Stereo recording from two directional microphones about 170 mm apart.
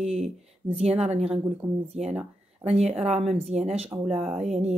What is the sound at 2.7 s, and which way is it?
Speech, 40° right (ahead or behind).